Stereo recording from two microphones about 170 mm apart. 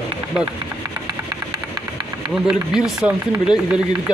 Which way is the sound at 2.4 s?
5° right (ahead or behind).